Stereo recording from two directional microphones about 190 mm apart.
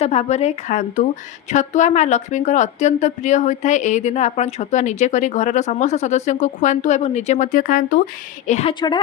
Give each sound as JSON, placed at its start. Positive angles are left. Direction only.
{"t": 0.0, "sound": "speech", "side_deg": 35}
{"t": 8.4, "sound": "speech", "side_deg": 35}